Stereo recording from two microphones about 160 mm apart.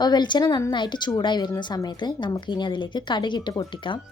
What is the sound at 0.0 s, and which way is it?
Speech, 25° left (ahead or behind).